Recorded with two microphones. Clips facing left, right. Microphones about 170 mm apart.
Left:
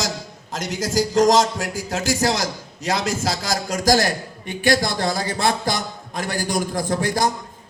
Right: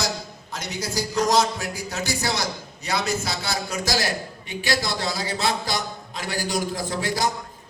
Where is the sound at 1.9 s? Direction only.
90° left.